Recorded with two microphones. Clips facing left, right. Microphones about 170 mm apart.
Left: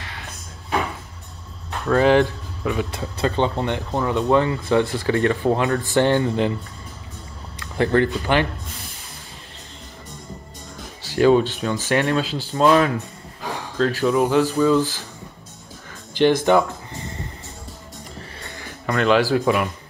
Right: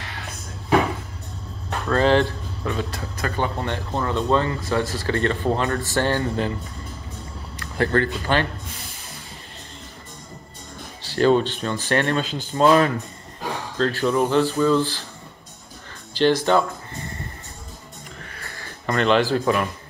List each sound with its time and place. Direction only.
1.9 s speech: 10° left (ahead or behind)
7.7 s speech: 20° left (ahead or behind)
11.1 s speech: 10° left (ahead or behind)
16.1 s music: 15° left (ahead or behind)
18.4 s music: 20° left (ahead or behind)
18.9 s speech: 5° left (ahead or behind)